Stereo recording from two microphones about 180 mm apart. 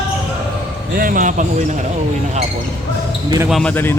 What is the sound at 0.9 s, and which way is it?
Speech, 50° right (ahead or behind).